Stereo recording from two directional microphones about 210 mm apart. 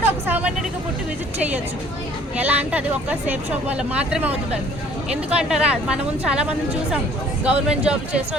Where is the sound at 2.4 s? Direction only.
5° right (ahead or behind).